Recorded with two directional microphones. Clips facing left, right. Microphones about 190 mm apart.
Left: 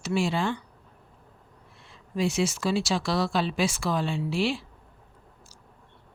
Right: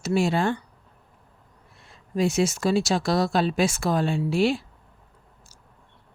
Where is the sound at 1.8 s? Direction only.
45° right (ahead or behind).